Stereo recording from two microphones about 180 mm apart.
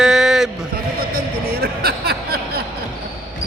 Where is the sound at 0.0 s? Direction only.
Centre (ahead or behind).